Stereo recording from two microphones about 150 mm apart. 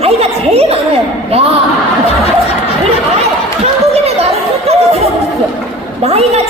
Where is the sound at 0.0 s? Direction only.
45° right (ahead or behind).